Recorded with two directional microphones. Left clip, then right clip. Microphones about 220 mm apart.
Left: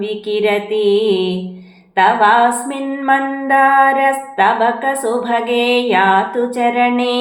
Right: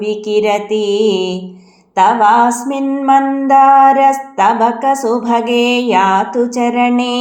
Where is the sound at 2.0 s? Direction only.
30° right (ahead or behind).